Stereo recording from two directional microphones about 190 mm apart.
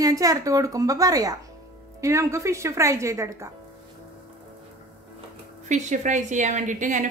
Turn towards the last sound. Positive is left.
turn(degrees=-40)  # may be behind; listen again after turning